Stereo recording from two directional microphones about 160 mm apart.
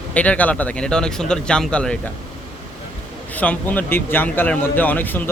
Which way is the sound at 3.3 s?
10° left (ahead or behind).